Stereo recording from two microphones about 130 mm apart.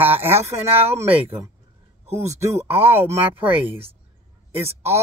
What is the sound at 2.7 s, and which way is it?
Speech, 20° right (ahead or behind).